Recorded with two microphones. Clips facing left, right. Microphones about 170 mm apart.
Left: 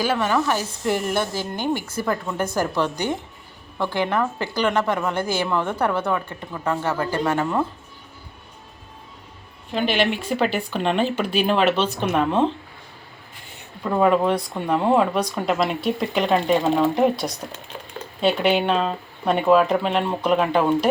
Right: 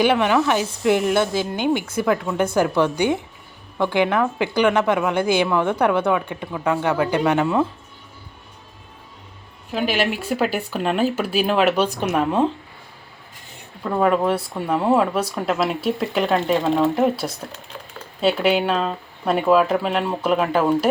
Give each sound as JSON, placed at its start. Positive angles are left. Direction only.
{"t": 0.2, "sound": "speech", "side_deg": -10}
{"t": 9.7, "sound": "speech", "side_deg": -5}
{"t": 13.8, "sound": "speech", "side_deg": 0}